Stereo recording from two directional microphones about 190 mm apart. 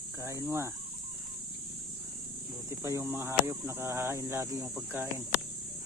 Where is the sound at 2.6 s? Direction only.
15° right (ahead or behind).